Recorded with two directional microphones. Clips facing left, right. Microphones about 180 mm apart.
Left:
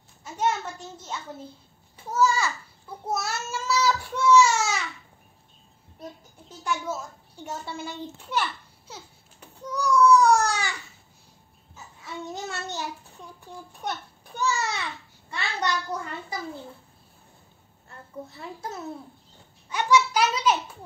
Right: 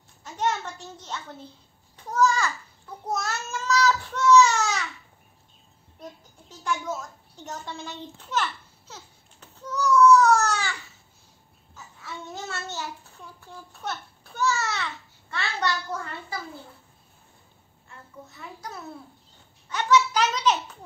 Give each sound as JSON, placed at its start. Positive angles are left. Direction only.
{"t": 0.2, "sound": "a child's voice", "side_deg": 10}
{"t": 6.6, "sound": "a sound", "side_deg": 10}
{"t": 11.7, "sound": "a child's voice", "side_deg": 15}
{"t": 13.7, "sound": "babbling", "side_deg": 15}
{"t": 17.8, "sound": "a child's voice", "side_deg": 30}
{"t": 19.7, "sound": "a child's voice", "side_deg": 10}